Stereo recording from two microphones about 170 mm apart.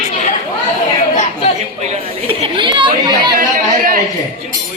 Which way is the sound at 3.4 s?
55° right (ahead or behind).